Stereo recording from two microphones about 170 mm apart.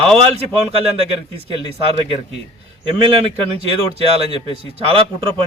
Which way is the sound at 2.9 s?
35° right (ahead or behind).